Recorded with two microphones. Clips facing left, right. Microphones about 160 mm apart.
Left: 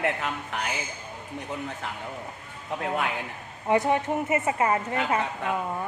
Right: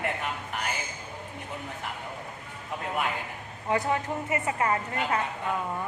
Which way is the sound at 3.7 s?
20° left (ahead or behind).